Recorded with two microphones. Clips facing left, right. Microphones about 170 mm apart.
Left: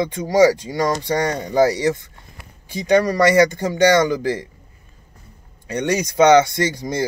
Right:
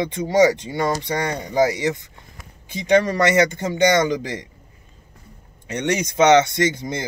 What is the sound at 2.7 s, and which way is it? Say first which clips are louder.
Speech: left 1 dB; 25° right (ahead or behind).